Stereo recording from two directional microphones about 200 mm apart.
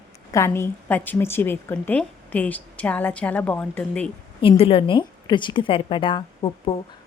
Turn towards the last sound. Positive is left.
turn(degrees=25)  # may be behind; listen again after turning